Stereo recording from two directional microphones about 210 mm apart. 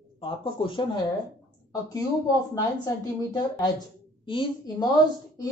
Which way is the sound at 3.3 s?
20° left (ahead or behind).